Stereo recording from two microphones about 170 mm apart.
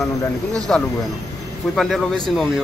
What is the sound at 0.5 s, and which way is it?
Speech, 5° left (ahead or behind).